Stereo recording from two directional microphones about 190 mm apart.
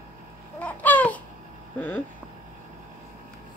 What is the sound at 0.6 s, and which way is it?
Babbling, 10° left (ahead or behind).